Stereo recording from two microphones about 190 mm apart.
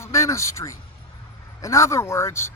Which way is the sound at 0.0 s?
15° left (ahead or behind).